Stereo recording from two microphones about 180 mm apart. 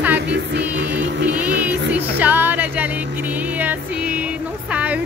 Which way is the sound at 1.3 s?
10° right (ahead or behind).